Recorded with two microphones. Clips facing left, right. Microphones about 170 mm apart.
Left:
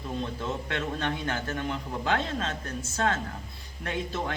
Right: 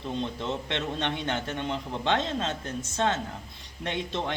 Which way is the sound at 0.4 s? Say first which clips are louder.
Right 1 dB; 20° right (ahead or behind).